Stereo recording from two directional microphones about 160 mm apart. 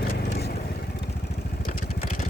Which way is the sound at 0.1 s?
80° left.